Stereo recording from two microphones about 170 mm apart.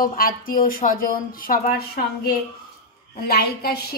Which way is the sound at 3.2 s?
65° left (ahead or behind).